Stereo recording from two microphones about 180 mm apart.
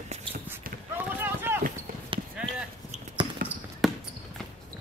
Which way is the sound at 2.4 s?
5° right (ahead or behind).